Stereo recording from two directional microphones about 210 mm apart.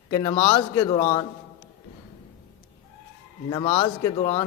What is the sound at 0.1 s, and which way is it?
A man's voice, 15° left (ahead or behind).